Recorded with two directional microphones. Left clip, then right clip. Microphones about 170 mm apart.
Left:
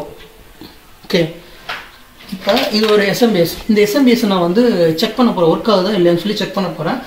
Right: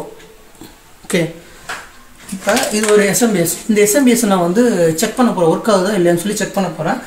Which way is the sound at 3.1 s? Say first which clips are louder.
Left 2 dB; 15° right (ahead or behind).